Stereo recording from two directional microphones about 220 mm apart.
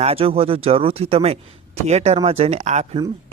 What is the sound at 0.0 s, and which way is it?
Speech, 25° right (ahead or behind).